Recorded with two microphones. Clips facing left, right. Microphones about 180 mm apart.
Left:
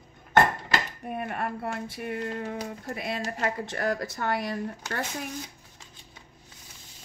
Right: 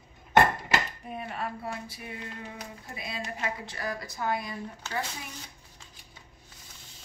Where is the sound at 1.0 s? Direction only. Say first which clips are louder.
Left 4 dB; 55° left (ahead or behind); by 4.6 s 75° left (ahead or behind).